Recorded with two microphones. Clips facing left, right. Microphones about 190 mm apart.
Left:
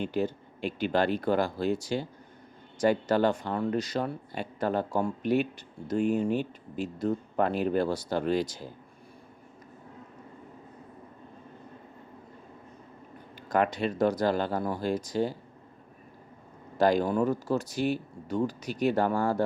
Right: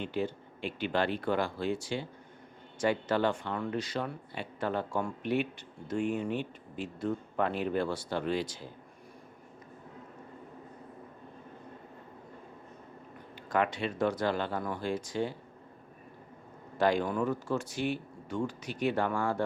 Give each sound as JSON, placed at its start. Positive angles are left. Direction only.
{"t": 0.0, "sound": "speech", "side_deg": 40}
{"t": 13.5, "sound": "speech", "side_deg": 40}
{"t": 16.7, "sound": "speech", "side_deg": 40}